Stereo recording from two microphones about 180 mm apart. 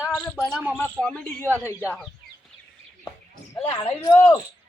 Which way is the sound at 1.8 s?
5° right (ahead or behind).